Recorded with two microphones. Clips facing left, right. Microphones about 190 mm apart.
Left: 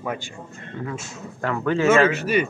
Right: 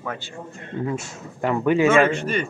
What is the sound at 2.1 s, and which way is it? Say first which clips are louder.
Speech: left 3 dB; 10° left (ahead or behind).